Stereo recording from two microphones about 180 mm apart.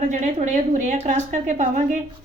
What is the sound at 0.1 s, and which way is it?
A woman's voice, 40° right (ahead or behind).